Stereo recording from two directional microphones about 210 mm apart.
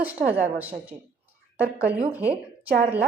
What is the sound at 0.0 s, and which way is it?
Speech, 10° right (ahead or behind).